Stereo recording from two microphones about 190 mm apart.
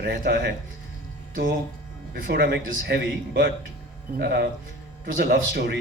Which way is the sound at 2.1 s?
55° right (ahead or behind).